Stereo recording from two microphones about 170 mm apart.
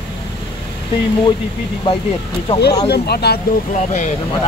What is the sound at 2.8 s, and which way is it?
Speech, 70° left (ahead or behind).